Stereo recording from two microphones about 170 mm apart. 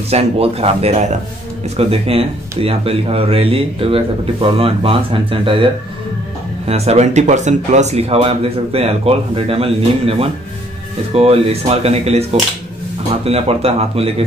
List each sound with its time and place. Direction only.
0.1 s speech: 35° right (ahead or behind)
6.7 s speech: 40° right (ahead or behind)